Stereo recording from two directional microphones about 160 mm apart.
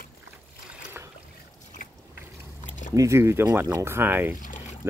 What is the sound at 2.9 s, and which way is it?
Speech, 20° right (ahead or behind).